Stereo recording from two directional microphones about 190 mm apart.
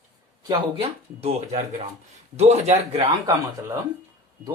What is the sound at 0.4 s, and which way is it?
A man's voice, 30° right (ahead or behind).